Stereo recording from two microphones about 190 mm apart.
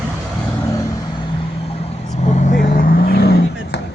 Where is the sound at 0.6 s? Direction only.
20° left (ahead or behind).